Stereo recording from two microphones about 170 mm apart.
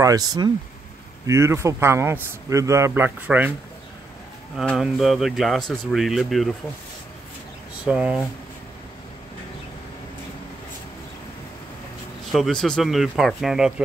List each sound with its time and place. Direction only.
0.0 s speech: 20° right (ahead or behind)
4.6 s speech: centre (ahead or behind)
7.8 s speech: 5° right (ahead or behind)
12.3 s speech: centre (ahead or behind)